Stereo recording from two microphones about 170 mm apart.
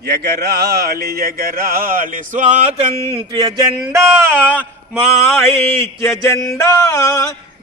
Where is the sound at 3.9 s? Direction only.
15° right (ahead or behind).